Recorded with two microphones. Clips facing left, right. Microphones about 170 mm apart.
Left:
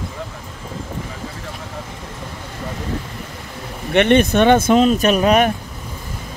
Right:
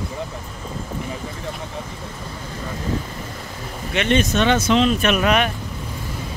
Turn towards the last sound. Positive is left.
turn(degrees=35)  # may be behind; listen again after turning